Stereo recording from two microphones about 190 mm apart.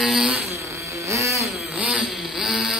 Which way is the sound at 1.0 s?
15° right (ahead or behind).